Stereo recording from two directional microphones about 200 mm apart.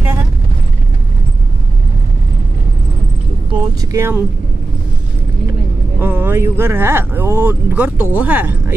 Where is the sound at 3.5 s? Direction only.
15° right (ahead or behind).